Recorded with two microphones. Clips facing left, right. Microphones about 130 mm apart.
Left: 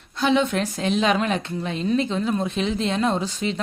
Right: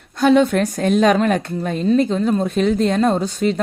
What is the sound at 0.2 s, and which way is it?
Speech, 50° right (ahead or behind).